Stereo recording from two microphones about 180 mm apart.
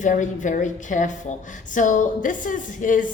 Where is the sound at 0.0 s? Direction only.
45° left (ahead or behind).